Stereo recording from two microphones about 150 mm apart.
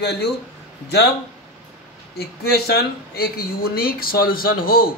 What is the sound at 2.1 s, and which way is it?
Speech, 90° left.